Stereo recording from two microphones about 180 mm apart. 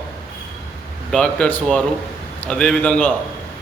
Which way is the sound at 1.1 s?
5° left (ahead or behind).